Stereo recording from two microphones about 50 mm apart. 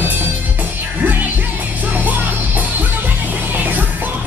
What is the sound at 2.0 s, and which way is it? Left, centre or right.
Music, right.